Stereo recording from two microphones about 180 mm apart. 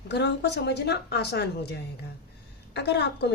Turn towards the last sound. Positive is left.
turn(degrees=70)  # may be behind; listen again after turning